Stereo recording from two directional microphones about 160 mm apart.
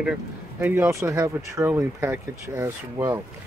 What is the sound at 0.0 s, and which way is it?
Speech, 10° right (ahead or behind).